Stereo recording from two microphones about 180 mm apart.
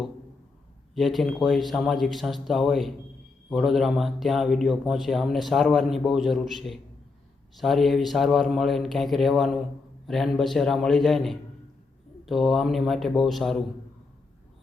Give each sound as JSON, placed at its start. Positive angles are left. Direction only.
{"t": 0.9, "sound": "speech", "side_deg": 0}